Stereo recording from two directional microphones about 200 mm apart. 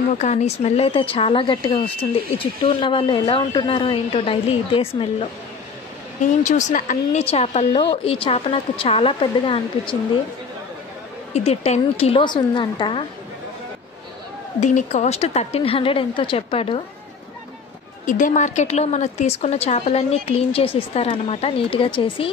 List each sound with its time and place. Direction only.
0.2 s speech: 35° left (ahead or behind)
6.4 s speech: 40° left (ahead or behind)
11.3 s speech: 35° left (ahead or behind)
14.6 s speech: 35° left (ahead or behind)
18.0 s a woman's voice: 40° left (ahead or behind)